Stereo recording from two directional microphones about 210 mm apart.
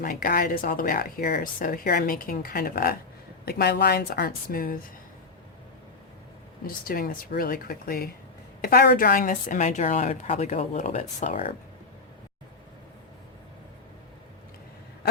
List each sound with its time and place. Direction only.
0.0 s speech: 45° left (ahead or behind)
6.7 s a woman's voice: 45° left (ahead or behind)